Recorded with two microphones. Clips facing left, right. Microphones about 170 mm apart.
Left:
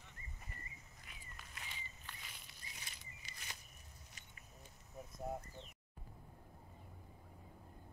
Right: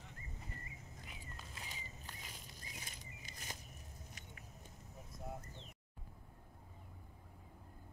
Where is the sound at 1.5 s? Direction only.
40° right (ahead or behind).